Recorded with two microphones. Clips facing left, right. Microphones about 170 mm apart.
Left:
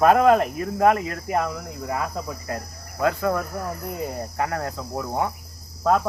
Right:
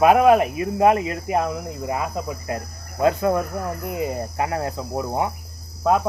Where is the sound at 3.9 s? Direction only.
10° right (ahead or behind).